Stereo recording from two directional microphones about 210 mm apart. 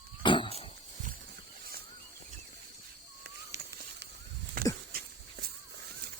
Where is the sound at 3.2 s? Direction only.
55° right (ahead or behind).